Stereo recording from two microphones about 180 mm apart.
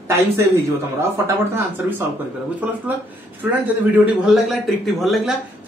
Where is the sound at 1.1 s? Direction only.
10° right (ahead or behind).